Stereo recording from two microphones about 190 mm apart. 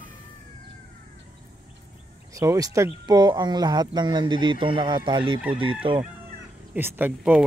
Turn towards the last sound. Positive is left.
turn(degrees=-10)  # may be behind; listen again after turning